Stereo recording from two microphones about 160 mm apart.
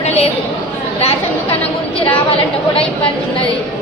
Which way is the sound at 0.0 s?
40° left (ahead or behind).